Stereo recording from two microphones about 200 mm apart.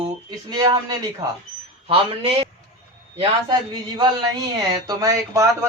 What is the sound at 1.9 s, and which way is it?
A man's voice, 30° right (ahead or behind).